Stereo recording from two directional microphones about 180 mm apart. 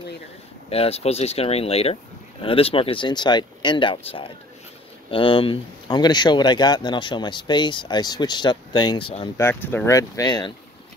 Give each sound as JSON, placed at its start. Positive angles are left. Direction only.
{"t": 0.7, "sound": "speech", "side_deg": 35}
{"t": 9.4, "sound": "speech", "side_deg": 10}